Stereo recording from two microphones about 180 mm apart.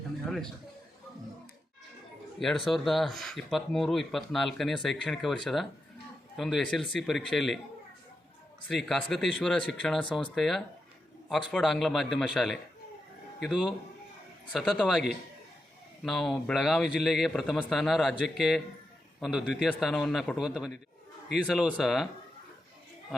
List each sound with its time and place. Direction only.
0.3 s a man's voice: centre (ahead or behind)
2.4 s speech: centre (ahead or behind)
8.6 s speech: 5° left (ahead or behind)
16.0 s speech: centre (ahead or behind)